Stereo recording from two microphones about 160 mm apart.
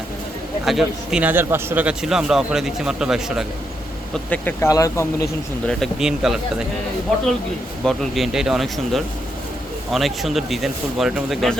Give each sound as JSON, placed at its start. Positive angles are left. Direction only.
{"t": 0.6, "sound": "a man's voice", "side_deg": 0}
{"t": 4.3, "sound": "speech", "side_deg": 10}
{"t": 5.6, "sound": "a man's voice", "side_deg": 0}
{"t": 7.9, "sound": "a man's voice", "side_deg": 0}